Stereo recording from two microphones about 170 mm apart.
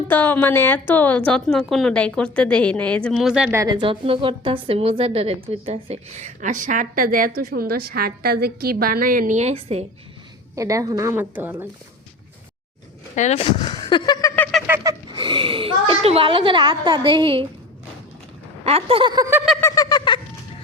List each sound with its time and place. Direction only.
0.1 s a woman's voice: 10° left (ahead or behind)
3.5 s a woman's voice: 20° right (ahead or behind); by 9.8 s 35° right (ahead or behind)
10.5 s speech: 20° right (ahead or behind)
13.1 s speech: 40° left (ahead or behind); by 14.6 s 10° left (ahead or behind)
14.8 s a sound: 20° right (ahead or behind)
15.2 s speech: 30° right (ahead or behind)
18.6 s a sound: 35° right (ahead or behind)
19.5 s owl: 20° left (ahead or behind)